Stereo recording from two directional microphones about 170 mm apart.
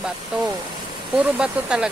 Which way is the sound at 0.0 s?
5° right (ahead or behind).